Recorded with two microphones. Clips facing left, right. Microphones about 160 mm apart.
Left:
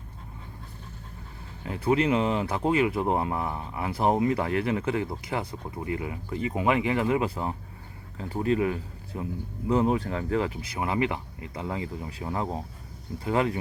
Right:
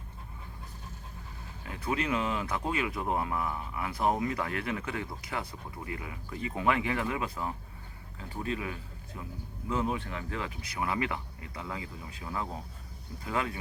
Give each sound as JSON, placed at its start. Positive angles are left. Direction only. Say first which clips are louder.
{"t": 1.6, "sound": "speech", "louder": "left 8 dB", "side_deg": 30}